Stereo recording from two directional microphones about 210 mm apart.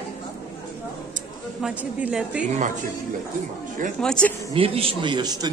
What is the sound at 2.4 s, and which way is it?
Speech, 35° right (ahead or behind).